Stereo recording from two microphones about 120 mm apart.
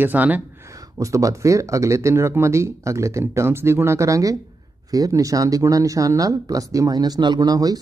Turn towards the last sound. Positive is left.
turn(degrees=-30)  # may be behind; listen again after turning